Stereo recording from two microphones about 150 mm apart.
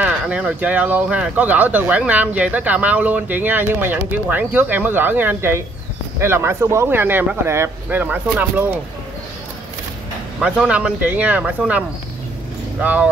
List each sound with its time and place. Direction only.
0.0 s speech: 10° right (ahead or behind)
10.4 s speech: 5° right (ahead or behind)
12.8 s speech: 10° right (ahead or behind)